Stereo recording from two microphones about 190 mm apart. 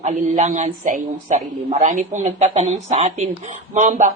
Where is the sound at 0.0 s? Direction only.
35° right (ahead or behind).